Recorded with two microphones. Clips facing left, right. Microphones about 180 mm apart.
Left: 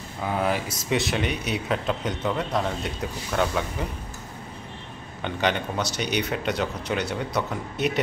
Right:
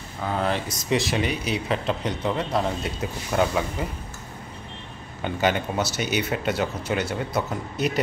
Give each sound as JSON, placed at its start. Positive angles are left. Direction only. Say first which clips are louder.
{"t": 0.2, "sound": "speech", "louder": "even", "side_deg": 10}
{"t": 5.2, "sound": "speech", "louder": "right 2 dB", "side_deg": -5}